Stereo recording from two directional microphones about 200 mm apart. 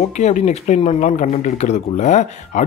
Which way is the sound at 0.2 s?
35° left (ahead or behind).